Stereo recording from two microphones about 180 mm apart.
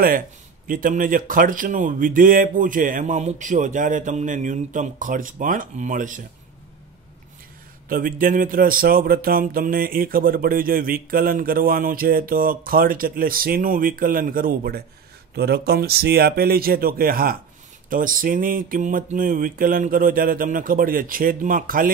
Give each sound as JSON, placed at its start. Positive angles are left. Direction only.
{"t": 0.7, "sound": "speech", "side_deg": -50}
{"t": 7.9, "sound": "speech", "side_deg": -50}